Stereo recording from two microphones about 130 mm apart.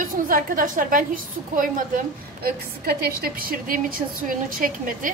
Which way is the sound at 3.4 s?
90° right.